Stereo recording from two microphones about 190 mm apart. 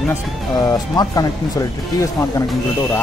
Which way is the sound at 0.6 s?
20° left (ahead or behind).